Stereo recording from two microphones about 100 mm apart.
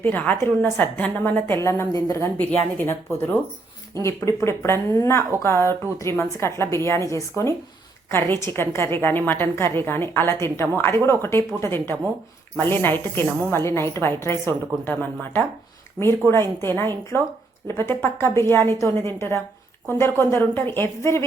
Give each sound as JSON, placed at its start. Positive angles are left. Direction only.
{"t": 0.0, "sound": "a woman's voice", "side_deg": 20}
{"t": 8.1, "sound": "a woman's voice", "side_deg": 25}